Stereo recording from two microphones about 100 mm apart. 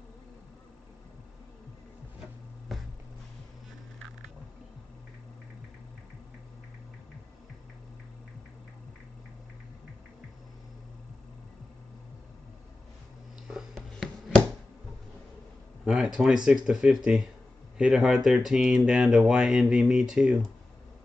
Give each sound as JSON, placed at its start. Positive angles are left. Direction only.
{"t": 2.7, "sound": "music", "side_deg": 0}
{"t": 13.5, "sound": "a sound", "side_deg": -5}
{"t": 15.8, "sound": "speech", "side_deg": -5}